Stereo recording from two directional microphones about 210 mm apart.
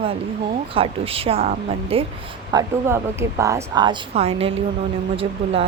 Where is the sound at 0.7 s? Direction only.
25° right (ahead or behind).